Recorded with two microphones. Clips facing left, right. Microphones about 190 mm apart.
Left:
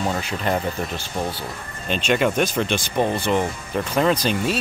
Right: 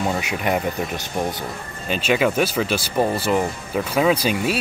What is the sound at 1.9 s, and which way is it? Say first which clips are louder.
Speech: right 1 dB; 5° right (ahead or behind).